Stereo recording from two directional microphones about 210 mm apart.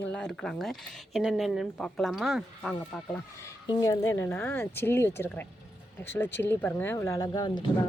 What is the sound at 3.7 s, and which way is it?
Speech, 20° left (ahead or behind).